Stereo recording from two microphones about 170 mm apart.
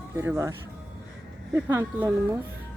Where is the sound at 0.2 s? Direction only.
15° right (ahead or behind).